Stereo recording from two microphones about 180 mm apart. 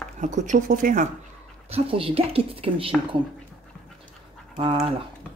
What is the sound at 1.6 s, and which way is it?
Speech, 30° right (ahead or behind).